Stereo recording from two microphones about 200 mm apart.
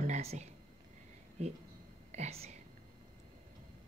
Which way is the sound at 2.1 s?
35° right (ahead or behind).